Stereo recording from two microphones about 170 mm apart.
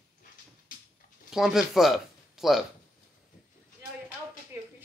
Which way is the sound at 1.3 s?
Centre (ahead or behind).